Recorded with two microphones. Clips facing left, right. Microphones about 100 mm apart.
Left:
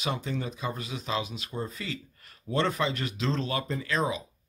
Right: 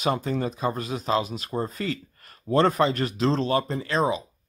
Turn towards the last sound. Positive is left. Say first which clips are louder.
# right 5 dB
turn(degrees=-30)  # may be behind; listen again after turning